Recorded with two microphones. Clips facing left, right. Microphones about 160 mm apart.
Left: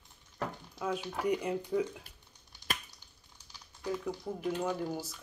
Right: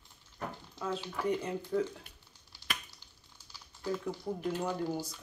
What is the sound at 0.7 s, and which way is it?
Speech, 15° left (ahead or behind).